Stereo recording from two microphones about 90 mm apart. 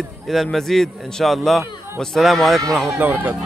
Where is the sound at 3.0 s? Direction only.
20° right (ahead or behind).